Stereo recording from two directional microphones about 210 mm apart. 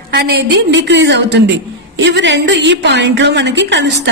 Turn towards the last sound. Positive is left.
turn(degrees=-55)  # may be behind; listen again after turning